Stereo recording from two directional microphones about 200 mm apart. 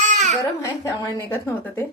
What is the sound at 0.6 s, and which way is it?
A woman's voice, 15° left (ahead or behind).